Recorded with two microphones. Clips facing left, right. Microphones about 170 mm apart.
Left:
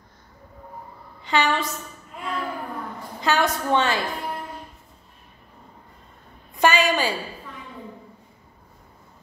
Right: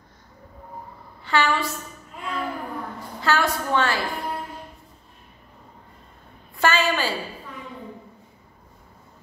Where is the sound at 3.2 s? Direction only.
20° left (ahead or behind).